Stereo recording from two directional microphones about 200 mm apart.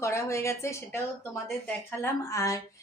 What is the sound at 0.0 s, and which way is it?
A woman's voice, 15° left (ahead or behind).